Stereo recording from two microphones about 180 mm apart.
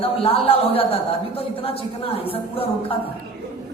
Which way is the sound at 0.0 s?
30° left (ahead or behind).